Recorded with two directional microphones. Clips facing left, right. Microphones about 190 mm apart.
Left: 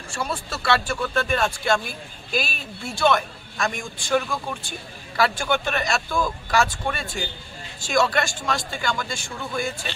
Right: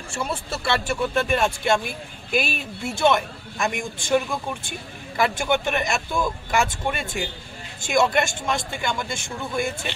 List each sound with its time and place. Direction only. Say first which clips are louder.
0.1 s a man's voice: right 1 dB; 25° right (ahead or behind)